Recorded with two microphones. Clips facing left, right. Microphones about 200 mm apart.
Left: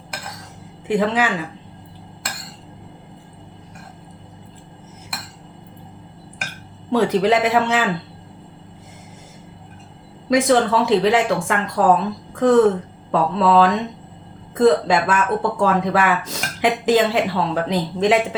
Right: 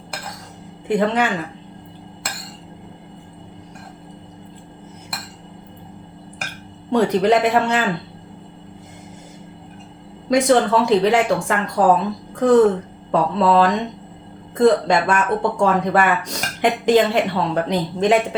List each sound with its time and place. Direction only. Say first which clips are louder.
0.9 s speech: right 1 dB; centre (ahead or behind)
6.9 s speech: right 1 dB; centre (ahead or behind)
10.2 s speech: right 1 dB; centre (ahead or behind)